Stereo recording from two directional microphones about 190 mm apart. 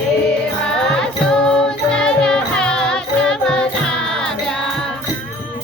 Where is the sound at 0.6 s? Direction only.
5° left (ahead or behind).